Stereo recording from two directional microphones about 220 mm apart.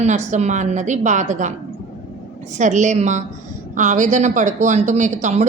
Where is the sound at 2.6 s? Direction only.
35° right (ahead or behind).